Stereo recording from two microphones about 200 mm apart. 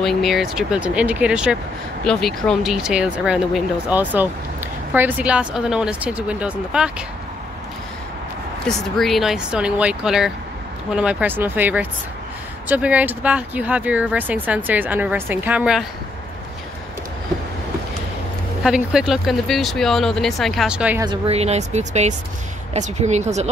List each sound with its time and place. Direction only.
0.0 s speech: centre (ahead or behind)
8.6 s speech: centre (ahead or behind)
18.6 s speech: 5° right (ahead or behind)
21.0 s speech: 25° right (ahead or behind)